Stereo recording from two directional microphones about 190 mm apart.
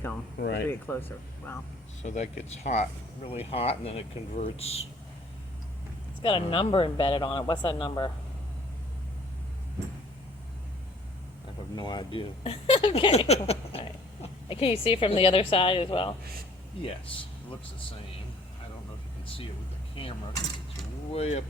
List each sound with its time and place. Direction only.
0.3 s speech: 60° left (ahead or behind)
0.7 s speech: 10° left (ahead or behind)
2.0 s speech: 35° left (ahead or behind)
6.2 s speech: 25° left (ahead or behind)
11.8 s speech: 25° left (ahead or behind)
20.0 s mechanisms: 30° left (ahead or behind)
21.1 s speech: 35° left (ahead or behind)